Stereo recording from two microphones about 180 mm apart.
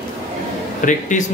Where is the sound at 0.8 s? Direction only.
45° left (ahead or behind).